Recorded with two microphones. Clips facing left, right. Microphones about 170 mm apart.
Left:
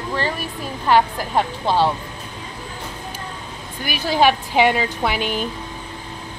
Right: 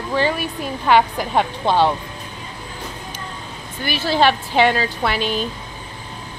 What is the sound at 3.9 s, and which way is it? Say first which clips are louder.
Speech: even; 15° left (ahead or behind).